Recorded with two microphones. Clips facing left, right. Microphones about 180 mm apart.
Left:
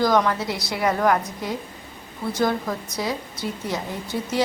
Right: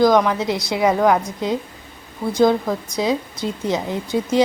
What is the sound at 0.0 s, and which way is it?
A woman's voice, 15° right (ahead or behind).